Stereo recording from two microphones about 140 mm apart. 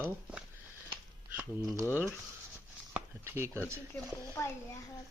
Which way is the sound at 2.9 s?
15° right (ahead or behind).